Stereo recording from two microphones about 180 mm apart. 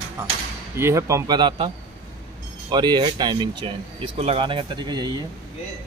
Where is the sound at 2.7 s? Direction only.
25° right (ahead or behind).